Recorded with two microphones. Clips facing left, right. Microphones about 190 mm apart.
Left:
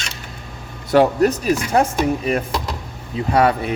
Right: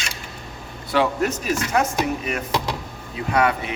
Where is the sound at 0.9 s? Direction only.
40° left (ahead or behind).